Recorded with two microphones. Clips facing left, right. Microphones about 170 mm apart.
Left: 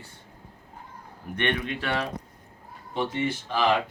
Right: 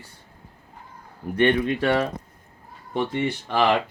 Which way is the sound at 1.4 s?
35° right (ahead or behind).